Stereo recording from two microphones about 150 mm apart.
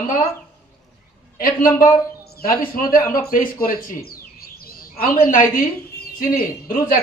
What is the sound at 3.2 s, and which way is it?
Bird, 80° left.